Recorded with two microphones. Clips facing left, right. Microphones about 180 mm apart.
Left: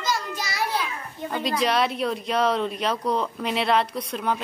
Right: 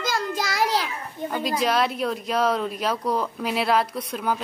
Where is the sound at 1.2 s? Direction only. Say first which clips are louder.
Right 2 dB; 50° right (ahead or behind).